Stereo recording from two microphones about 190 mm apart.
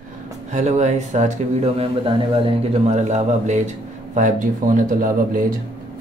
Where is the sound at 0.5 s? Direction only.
40° right (ahead or behind).